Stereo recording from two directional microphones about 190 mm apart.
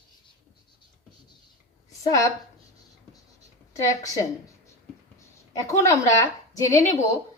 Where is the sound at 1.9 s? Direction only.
15° left (ahead or behind).